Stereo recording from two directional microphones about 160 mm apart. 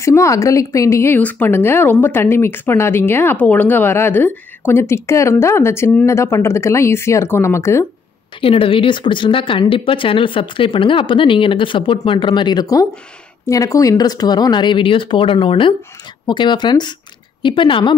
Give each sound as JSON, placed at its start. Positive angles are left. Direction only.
{"t": 0.0, "sound": "speech", "side_deg": 20}
{"t": 8.4, "sound": "a woman's voice", "side_deg": 35}